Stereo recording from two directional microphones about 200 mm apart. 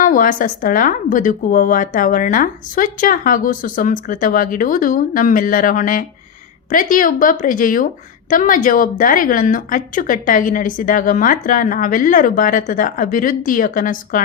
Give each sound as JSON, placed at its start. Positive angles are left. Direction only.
{"t": 0.0, "sound": "a woman's voice", "side_deg": 40}